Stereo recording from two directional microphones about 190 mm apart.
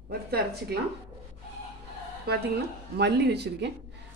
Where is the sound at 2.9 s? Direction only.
60° right (ahead or behind).